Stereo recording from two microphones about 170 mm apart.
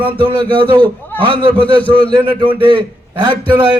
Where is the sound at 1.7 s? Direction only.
10° left (ahead or behind).